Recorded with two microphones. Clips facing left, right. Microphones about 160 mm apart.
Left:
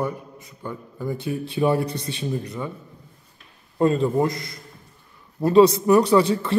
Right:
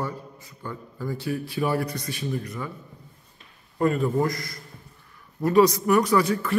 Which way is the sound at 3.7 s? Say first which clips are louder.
Left 3 dB; 25° left (ahead or behind).